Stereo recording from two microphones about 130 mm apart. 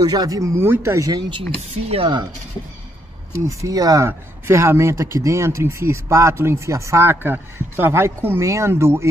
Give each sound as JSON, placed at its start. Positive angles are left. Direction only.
{"t": 0.0, "sound": "speech", "side_deg": -30}
{"t": 1.6, "sound": "speech", "side_deg": -55}
{"t": 3.4, "sound": "speech", "side_deg": -25}